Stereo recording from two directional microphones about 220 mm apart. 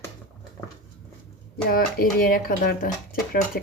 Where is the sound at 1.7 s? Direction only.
40° left (ahead or behind).